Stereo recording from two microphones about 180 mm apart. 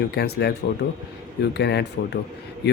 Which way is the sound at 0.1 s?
65° left (ahead or behind).